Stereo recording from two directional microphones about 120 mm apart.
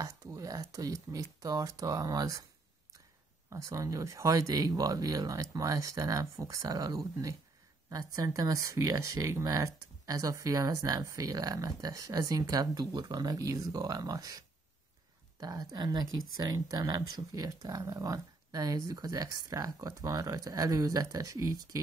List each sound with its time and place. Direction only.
0.0 s speech: 30° right (ahead or behind)
3.4 s speech: 25° right (ahead or behind)
15.4 s speech: 35° right (ahead or behind)